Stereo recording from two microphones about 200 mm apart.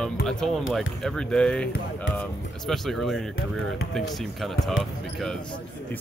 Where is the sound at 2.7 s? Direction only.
Centre (ahead or behind).